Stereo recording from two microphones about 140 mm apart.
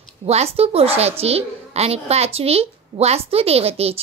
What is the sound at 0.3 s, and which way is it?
A woman's voice, 45° right (ahead or behind).